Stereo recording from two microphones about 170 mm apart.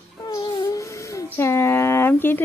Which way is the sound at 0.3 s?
20° left (ahead or behind).